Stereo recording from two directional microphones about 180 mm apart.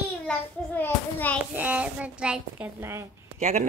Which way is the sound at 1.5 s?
10° right (ahead or behind).